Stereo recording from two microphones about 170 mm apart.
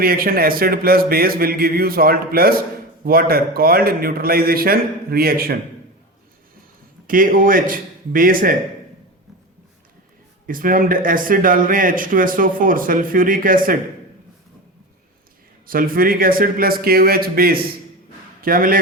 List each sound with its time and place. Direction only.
0.0 s speech: 60° right (ahead or behind)
7.1 s speech: 55° right (ahead or behind)
10.4 s speech: 55° right (ahead or behind)
15.6 s speech: 55° right (ahead or behind)